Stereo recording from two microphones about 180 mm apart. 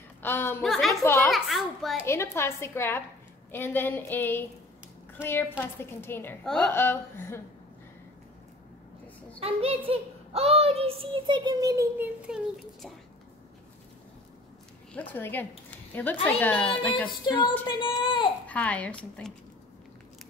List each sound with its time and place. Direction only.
0.2 s a sound: 10° left (ahead or behind)
0.6 s a woman's voice: centre (ahead or behind)
1.0 s a woman's voice: 15° left (ahead or behind)
1.3 s a sound: centre (ahead or behind)
2.0 s a woman's voice: 15° left (ahead or behind)
9.4 s child singing: 35° right (ahead or behind); by 12.1 s 20° right (ahead or behind)
12.3 s a woman's voice: 5° right (ahead or behind)
15.0 s a woman's voice: 10° left (ahead or behind)
17.3 s speech: 25° left (ahead or behind)
18.5 s a woman's voice: 10° left (ahead or behind)